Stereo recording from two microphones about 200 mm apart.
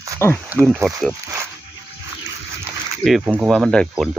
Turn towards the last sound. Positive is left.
turn(degrees=0)  # may be behind; listen again after turning